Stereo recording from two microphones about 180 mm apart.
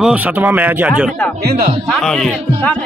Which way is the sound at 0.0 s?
10° right (ahead or behind).